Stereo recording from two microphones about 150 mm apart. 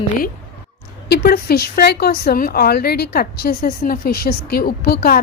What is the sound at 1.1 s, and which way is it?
Speech, 90° left.